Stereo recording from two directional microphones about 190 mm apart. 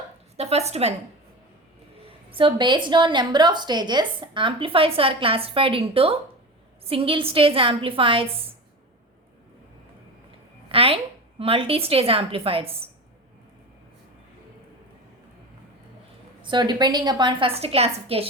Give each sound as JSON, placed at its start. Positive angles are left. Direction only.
{"t": 0.3, "sound": "a woman's voice", "side_deg": -35}
{"t": 2.0, "sound": "a woman's voice", "side_deg": -30}
{"t": 10.7, "sound": "a woman's voice", "side_deg": -30}
{"t": 16.4, "sound": "a woman's voice", "side_deg": -25}